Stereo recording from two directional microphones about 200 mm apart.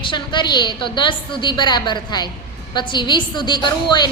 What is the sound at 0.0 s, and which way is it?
A woman's voice, 25° left (ahead or behind).